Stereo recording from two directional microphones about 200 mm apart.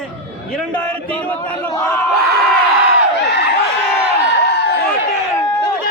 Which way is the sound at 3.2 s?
60° left (ahead or behind).